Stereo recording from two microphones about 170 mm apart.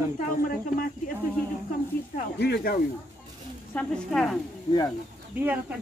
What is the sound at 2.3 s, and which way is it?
Speech, 75° left (ahead or behind).